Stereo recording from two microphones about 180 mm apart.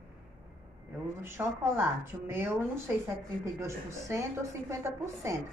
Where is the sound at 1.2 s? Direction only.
15° right (ahead or behind).